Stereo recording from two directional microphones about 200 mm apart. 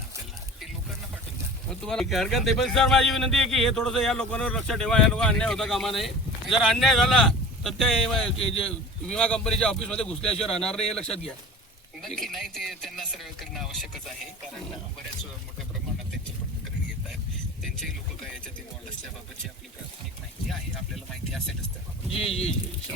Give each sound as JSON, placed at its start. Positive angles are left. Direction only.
{"t": 1.8, "sound": "speech", "side_deg": 0}
{"t": 17.6, "sound": "boat", "side_deg": 0}
{"t": 20.5, "sound": "speech", "side_deg": 0}
{"t": 22.1, "sound": "speech", "side_deg": 30}